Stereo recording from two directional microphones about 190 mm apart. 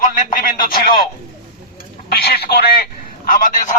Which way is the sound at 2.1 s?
55° left (ahead or behind).